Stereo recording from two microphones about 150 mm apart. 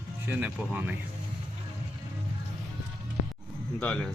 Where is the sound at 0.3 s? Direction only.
15° right (ahead or behind).